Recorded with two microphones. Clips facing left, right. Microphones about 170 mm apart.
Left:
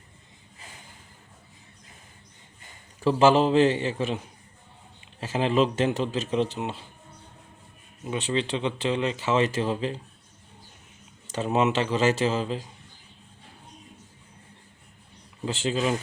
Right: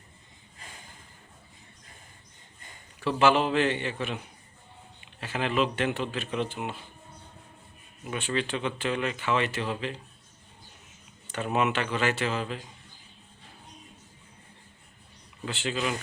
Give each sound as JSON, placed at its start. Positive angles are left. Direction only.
{"t": 3.0, "sound": "speech", "side_deg": 35}
{"t": 5.4, "sound": "speech", "side_deg": 30}
{"t": 8.0, "sound": "speech", "side_deg": 25}
{"t": 11.3, "sound": "speech", "side_deg": 25}
{"t": 15.6, "sound": "speech", "side_deg": 35}